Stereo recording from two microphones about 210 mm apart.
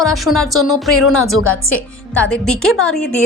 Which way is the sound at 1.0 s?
85° left.